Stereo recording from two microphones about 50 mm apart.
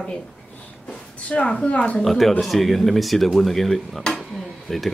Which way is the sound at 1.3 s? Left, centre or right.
Left.